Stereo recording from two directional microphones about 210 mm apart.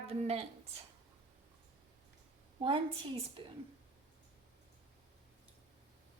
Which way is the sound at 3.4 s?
25° right (ahead or behind).